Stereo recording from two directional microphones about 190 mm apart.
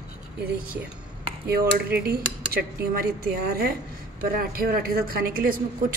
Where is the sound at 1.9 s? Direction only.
55° right (ahead or behind).